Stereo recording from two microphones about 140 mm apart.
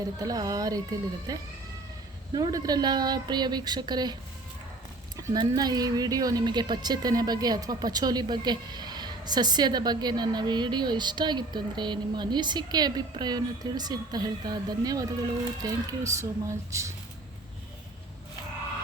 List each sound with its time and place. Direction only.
0.2 s speech: 25° right (ahead or behind)